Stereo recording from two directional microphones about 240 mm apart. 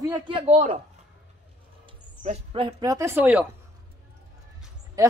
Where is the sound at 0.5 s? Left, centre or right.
Right.